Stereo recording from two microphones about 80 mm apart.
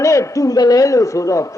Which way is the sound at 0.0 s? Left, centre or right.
Left.